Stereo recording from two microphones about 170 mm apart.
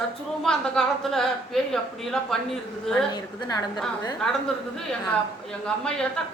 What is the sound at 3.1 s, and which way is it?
Speech, 25° left (ahead or behind).